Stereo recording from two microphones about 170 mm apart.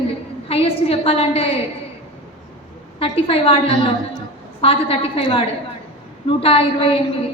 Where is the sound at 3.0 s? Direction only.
35° left (ahead or behind).